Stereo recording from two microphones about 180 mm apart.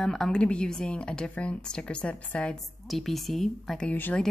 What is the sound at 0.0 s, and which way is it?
Speech, 5° left (ahead or behind).